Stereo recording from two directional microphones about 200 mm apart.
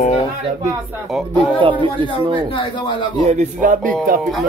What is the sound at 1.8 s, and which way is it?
Speech, 25° right (ahead or behind).